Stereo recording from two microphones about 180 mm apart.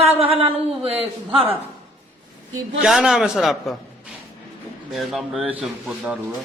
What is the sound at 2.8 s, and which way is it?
Speech, 5° right (ahead or behind).